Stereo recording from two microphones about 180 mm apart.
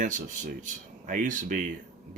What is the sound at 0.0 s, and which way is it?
Speech, 45° right (ahead or behind).